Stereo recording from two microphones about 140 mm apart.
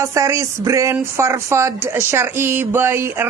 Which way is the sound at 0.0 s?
20° right (ahead or behind).